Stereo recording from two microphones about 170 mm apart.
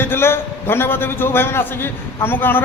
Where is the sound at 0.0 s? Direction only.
15° left (ahead or behind).